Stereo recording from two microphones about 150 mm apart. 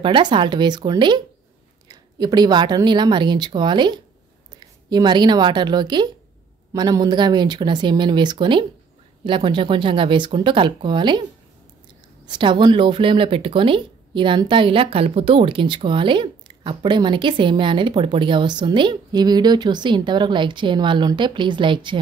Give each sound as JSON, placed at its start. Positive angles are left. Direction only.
{"t": 0.0, "sound": "speech", "side_deg": -30}
{"t": 12.3, "sound": "speech", "side_deg": -30}